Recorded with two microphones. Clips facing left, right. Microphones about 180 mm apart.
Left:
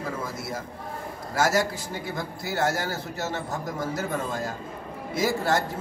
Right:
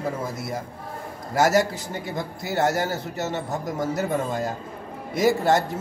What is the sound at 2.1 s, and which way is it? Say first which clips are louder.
A man's voice: right 3 dB; 20° right (ahead or behind).